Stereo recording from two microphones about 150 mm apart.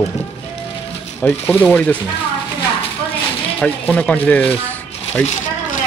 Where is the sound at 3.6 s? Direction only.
10° left (ahead or behind).